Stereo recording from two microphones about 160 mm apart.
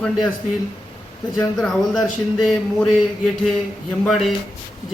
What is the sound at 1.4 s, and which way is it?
A man's voice, centre (ahead or behind).